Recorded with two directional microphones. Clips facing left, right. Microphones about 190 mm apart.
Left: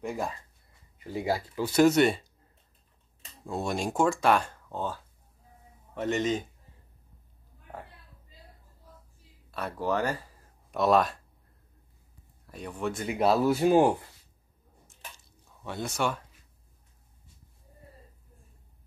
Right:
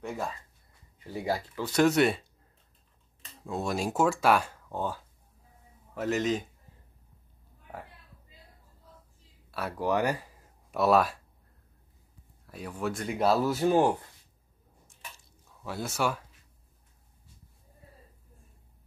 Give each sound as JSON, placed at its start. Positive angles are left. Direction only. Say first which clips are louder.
{"t": 1.0, "sound": "speech", "louder": "left 2 dB", "side_deg": 15}
{"t": 3.4, "sound": "speech", "louder": "even", "side_deg": 0}
{"t": 5.9, "sound": "speech", "louder": "even", "side_deg": 0}
{"t": 9.5, "sound": "speech", "louder": "right 1 dB", "side_deg": -5}
{"t": 12.4, "sound": "speech", "louder": "even", "side_deg": 0}
{"t": 13.5, "sound": "speech", "louder": "left 3 dB", "side_deg": 10}
{"t": 15.6, "sound": "speech", "louder": "even", "side_deg": -5}